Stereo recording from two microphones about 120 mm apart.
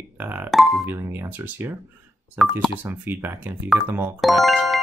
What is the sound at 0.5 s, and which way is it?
Speech, centre (ahead or behind).